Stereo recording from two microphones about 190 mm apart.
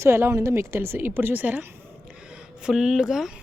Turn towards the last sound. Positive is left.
turn(degrees=0)  # may be behind; listen again after turning